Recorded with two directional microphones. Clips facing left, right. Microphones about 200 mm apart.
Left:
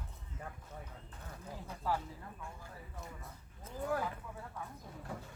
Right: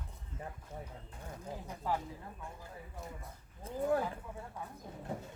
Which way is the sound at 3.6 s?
30° right (ahead or behind).